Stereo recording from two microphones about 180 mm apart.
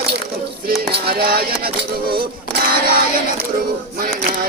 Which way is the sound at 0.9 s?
60° right (ahead or behind).